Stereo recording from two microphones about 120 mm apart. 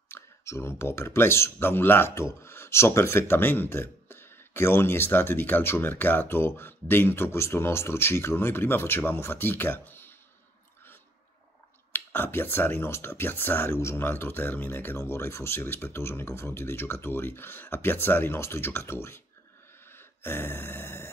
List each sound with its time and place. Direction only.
0.1 s speech: 20° left (ahead or behind)
11.9 s speech: 20° left (ahead or behind)
19.9 s a sound: 20° left (ahead or behind)